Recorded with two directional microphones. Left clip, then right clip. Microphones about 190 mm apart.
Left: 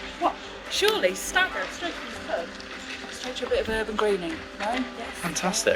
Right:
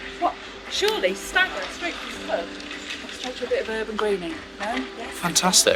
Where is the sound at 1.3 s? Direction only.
25° left (ahead or behind).